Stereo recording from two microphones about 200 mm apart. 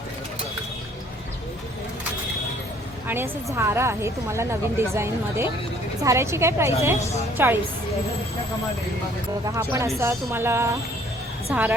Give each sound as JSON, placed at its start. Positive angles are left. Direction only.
{"t": 3.1, "sound": "a woman's voice", "side_deg": -10}
{"t": 9.5, "sound": "a woman's voice", "side_deg": -15}